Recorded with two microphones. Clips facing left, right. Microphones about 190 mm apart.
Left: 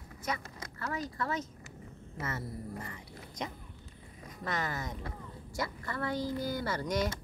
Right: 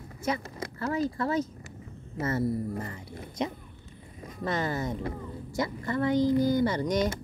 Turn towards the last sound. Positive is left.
turn(degrees=-20)  # may be behind; listen again after turning